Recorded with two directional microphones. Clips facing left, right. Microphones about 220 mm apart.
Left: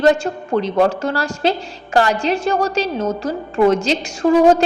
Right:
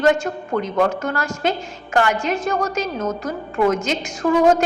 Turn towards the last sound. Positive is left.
turn(degrees=30)  # may be behind; listen again after turning